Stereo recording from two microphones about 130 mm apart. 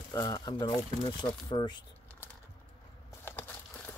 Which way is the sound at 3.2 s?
15° left (ahead or behind).